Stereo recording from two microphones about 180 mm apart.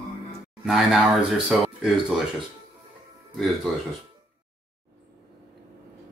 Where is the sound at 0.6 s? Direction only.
Centre (ahead or behind).